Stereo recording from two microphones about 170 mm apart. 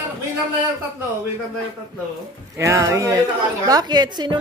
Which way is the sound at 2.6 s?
15° right (ahead or behind).